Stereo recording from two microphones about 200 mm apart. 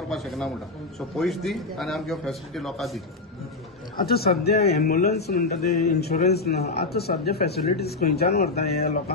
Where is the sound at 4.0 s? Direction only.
50° left (ahead or behind).